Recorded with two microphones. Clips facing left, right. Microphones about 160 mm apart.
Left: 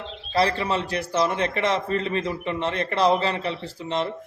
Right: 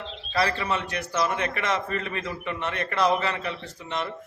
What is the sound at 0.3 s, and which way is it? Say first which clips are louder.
A man's voice: left 3 dB; 30° left (ahead or behind).